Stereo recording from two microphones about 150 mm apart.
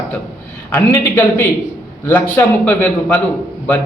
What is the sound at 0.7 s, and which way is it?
A man's voice, 15° left (ahead or behind).